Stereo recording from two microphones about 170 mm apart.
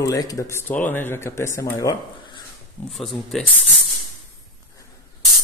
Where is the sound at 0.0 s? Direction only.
20° left (ahead or behind).